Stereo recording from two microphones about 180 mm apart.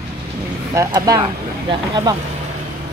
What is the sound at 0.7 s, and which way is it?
Speech, 20° right (ahead or behind).